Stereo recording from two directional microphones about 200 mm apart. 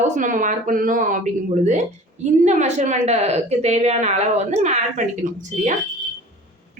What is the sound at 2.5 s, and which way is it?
A woman's voice, 35° right (ahead or behind).